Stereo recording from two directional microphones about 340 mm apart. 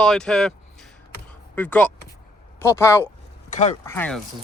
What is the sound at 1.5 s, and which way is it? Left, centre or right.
Speech, centre.